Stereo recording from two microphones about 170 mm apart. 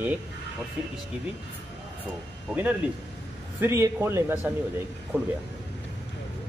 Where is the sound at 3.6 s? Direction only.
15° right (ahead or behind).